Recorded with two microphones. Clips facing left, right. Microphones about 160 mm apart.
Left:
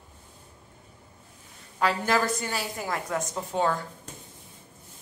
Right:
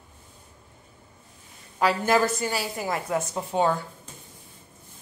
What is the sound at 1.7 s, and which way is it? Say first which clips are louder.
A woman's voice: right 3 dB; 10° right (ahead or behind).